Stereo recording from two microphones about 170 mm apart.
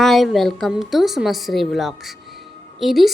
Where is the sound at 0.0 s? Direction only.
Centre (ahead or behind).